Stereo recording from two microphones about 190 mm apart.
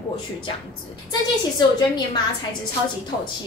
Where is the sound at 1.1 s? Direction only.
20° left (ahead or behind).